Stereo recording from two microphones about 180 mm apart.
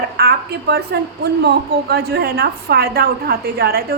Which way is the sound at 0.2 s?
60° right (ahead or behind).